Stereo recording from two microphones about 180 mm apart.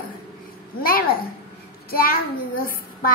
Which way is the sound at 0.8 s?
55° left (ahead or behind).